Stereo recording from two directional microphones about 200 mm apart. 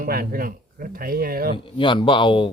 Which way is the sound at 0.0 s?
45° right (ahead or behind).